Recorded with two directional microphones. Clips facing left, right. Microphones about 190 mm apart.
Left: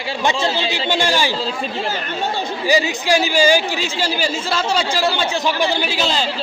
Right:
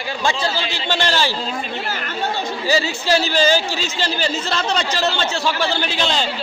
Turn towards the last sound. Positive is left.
turn(degrees=5)  # may be behind; listen again after turning